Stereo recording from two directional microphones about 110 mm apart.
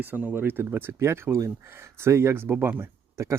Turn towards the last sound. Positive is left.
turn(degrees=-25)  # may be behind; listen again after turning